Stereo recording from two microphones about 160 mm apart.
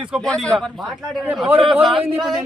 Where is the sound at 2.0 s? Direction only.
25° right (ahead or behind).